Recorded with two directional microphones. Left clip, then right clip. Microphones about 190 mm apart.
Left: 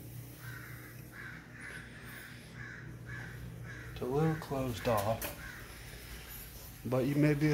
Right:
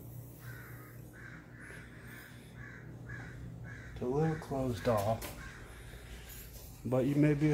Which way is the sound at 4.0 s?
15° right (ahead or behind).